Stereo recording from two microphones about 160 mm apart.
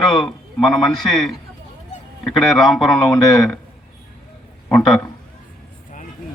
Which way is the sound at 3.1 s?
20° left (ahead or behind).